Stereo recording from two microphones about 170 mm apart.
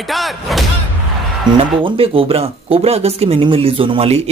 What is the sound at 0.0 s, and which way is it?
Speech, centre (ahead or behind).